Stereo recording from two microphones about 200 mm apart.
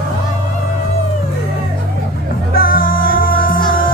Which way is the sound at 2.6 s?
45° left (ahead or behind).